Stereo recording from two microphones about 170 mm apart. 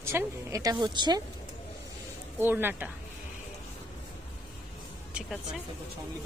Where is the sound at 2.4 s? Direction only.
10° right (ahead or behind).